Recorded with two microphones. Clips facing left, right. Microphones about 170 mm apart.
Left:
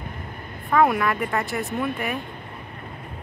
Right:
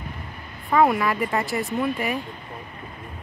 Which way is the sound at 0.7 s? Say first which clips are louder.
Even; centre (ahead or behind).